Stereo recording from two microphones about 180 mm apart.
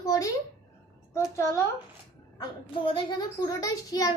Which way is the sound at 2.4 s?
30° left (ahead or behind).